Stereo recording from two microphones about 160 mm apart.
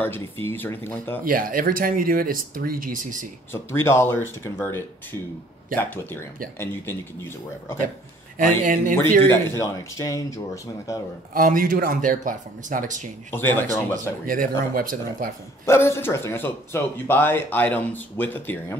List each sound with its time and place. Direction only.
0.0 s speech: 15° left (ahead or behind)
1.2 s speech: 60° right (ahead or behind)
3.5 s speech: 15° left (ahead or behind)
8.4 s speech: 55° right (ahead or behind)
9.3 s speech: 20° left (ahead or behind)
11.3 s speech: 55° right (ahead or behind)
13.3 s speech: 15° left (ahead or behind)
14.2 s speech: 60° right (ahead or behind)
15.6 s speech: 15° left (ahead or behind)